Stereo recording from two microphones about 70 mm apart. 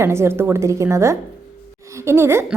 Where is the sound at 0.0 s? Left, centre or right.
Right.